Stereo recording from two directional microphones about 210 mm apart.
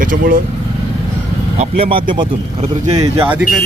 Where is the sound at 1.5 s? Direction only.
30° right (ahead or behind); by 3.4 s 10° right (ahead or behind).